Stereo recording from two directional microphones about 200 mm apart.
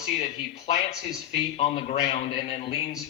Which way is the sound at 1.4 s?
30° left (ahead or behind).